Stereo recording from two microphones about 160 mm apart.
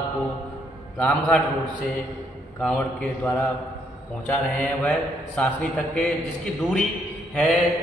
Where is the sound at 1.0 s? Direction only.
10° left (ahead or behind).